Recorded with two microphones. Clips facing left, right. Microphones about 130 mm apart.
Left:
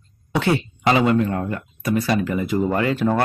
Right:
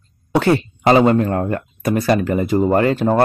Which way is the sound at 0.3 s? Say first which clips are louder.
Right 5 dB; 45° right (ahead or behind).